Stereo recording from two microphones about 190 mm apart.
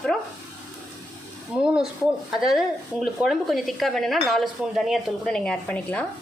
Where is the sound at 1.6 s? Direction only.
5° right (ahead or behind).